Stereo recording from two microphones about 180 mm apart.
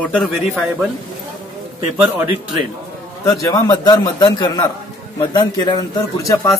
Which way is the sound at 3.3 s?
15° left (ahead or behind).